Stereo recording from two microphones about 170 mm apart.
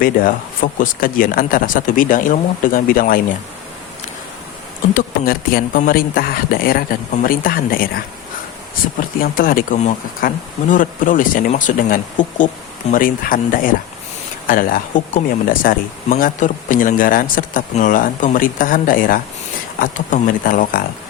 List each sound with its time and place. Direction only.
0.0 s speech: 55° left (ahead or behind)
4.9 s speech: 60° left (ahead or behind)
9.0 s speech: 55° left (ahead or behind)